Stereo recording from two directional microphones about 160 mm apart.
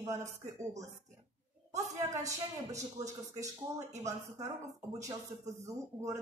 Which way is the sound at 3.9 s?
45° right (ahead or behind).